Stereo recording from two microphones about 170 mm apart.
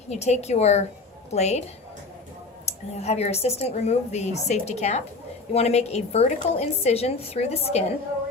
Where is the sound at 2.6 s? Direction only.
40° left (ahead or behind).